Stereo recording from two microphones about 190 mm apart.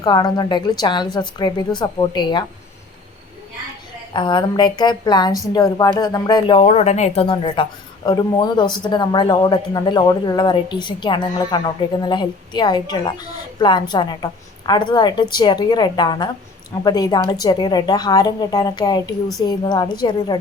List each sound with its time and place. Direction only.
0.0 s speech: 20° left (ahead or behind)
4.1 s speech: 25° left (ahead or behind)